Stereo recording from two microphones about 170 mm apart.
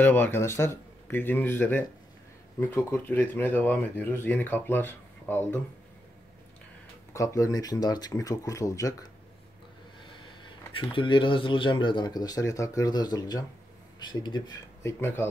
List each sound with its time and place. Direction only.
0.0 s speech: 10° left (ahead or behind)
7.2 s speech: 20° left (ahead or behind)
10.4 s speech: 30° left (ahead or behind)